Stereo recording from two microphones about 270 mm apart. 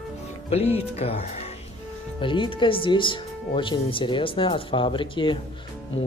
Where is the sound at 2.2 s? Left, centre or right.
Centre.